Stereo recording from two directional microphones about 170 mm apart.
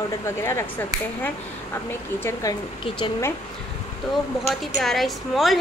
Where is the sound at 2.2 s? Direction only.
20° left (ahead or behind).